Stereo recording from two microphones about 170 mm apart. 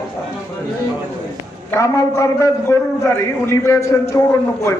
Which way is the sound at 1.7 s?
15° left (ahead or behind).